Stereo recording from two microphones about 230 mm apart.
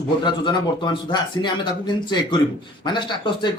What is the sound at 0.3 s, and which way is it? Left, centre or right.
Speech, centre.